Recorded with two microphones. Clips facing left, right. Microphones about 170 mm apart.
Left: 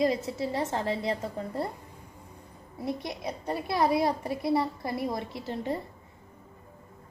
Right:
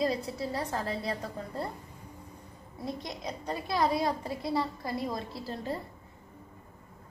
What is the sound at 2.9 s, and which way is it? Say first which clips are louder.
Speech: left 5 dB; 65° left (ahead or behind).